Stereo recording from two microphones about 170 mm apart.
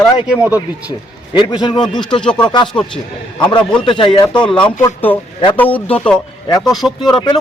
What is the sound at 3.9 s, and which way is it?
Speech, 30° left (ahead or behind).